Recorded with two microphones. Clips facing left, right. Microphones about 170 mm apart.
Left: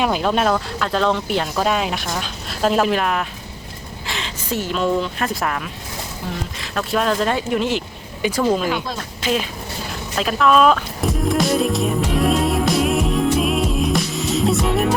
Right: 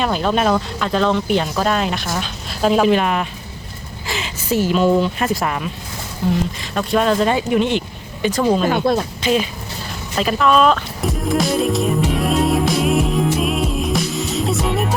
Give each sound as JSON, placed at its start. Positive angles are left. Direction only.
{"t": 0.0, "sound": "a woman's voice", "side_deg": 5}
{"t": 6.6, "sound": "speech", "side_deg": 0}
{"t": 8.6, "sound": "speech", "side_deg": -55}
{"t": 9.2, "sound": "speech", "side_deg": 0}